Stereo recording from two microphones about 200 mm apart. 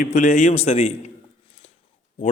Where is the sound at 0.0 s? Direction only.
40° left (ahead or behind).